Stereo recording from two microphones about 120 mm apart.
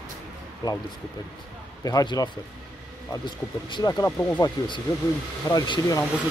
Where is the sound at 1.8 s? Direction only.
30° left (ahead or behind).